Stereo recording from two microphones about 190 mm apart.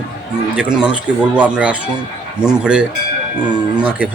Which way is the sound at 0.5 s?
5° right (ahead or behind).